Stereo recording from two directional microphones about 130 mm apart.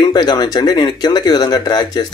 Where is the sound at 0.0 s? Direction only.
35° left (ahead or behind).